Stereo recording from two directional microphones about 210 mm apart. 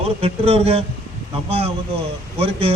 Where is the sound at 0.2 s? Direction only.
30° right (ahead or behind).